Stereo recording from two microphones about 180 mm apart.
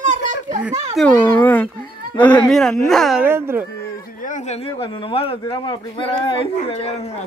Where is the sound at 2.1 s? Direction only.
5° left (ahead or behind).